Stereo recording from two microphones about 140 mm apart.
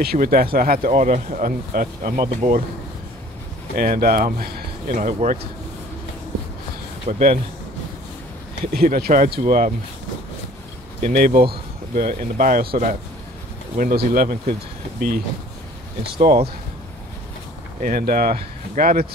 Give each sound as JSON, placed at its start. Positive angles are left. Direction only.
{"t": 0.0, "sound": "speech", "side_deg": -90}
{"t": 3.7, "sound": "speech", "side_deg": -90}
{"t": 7.1, "sound": "speech", "side_deg": -55}
{"t": 8.7, "sound": "speech", "side_deg": -90}
{"t": 11.0, "sound": "speech", "side_deg": -80}
{"t": 16.2, "sound": "speech", "side_deg": -80}
{"t": 17.8, "sound": "speech", "side_deg": -90}